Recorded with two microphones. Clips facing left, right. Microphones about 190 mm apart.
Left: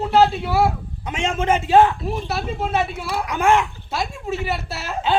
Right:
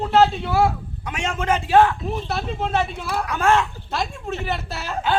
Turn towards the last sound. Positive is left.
turn(degrees=5)  # may be behind; listen again after turning